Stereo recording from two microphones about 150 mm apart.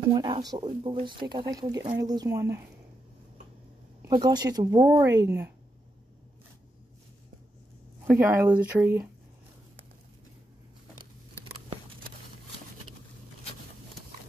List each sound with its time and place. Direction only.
0.1 s speech: 30° right (ahead or behind)
4.1 s speech: 30° right (ahead or behind)
8.1 s speech: 15° right (ahead or behind)